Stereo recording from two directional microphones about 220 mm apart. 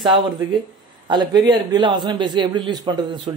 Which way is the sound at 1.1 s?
20° right (ahead or behind).